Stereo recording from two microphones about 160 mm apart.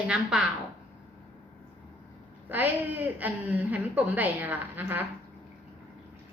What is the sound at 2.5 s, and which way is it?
A woman's voice, 10° right (ahead or behind).